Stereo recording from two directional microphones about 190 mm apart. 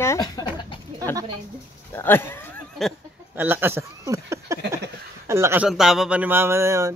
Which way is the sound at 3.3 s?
10° right (ahead or behind).